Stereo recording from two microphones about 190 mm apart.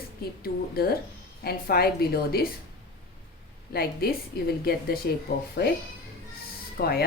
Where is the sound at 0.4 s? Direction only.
55° left (ahead or behind).